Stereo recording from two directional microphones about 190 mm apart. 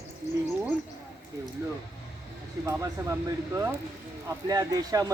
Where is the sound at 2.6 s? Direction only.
15° right (ahead or behind).